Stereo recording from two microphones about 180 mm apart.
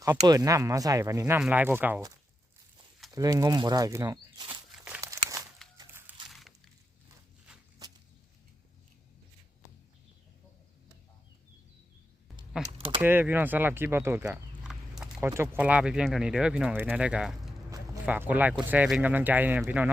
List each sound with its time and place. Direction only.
0.3 s speech: 20° right (ahead or behind)
4.4 s crumpling: 10° right (ahead or behind)
5.7 s a sound: 15° right (ahead or behind)
12.6 s speech: 5° right (ahead or behind)
15.2 s speech: 15° right (ahead or behind)